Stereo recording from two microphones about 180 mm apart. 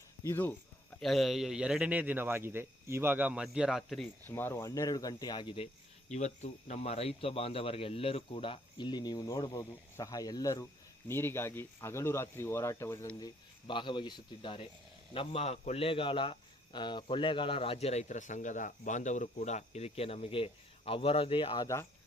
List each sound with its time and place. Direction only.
0.2 s speech: 15° left (ahead or behind)
0.9 s speech: centre (ahead or behind)
4.2 s speech: 10° left (ahead or behind)
6.1 s a man's voice: 40° left (ahead or behind); by 13.1 s 15° left (ahead or behind)
13.1 s a man's voice: 25° left (ahead or behind)